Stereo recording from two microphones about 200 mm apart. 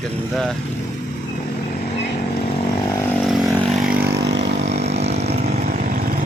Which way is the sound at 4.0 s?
60° right (ahead or behind).